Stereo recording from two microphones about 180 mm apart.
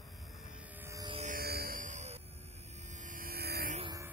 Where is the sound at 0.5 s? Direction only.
10° right (ahead or behind).